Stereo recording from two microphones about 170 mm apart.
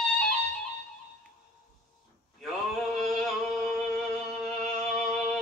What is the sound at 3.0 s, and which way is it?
Music, centre (ahead or behind).